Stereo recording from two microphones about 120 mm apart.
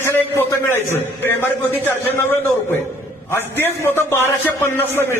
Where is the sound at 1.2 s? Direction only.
20° left (ahead or behind).